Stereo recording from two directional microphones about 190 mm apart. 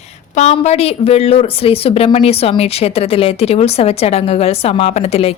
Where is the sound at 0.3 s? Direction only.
35° left (ahead or behind).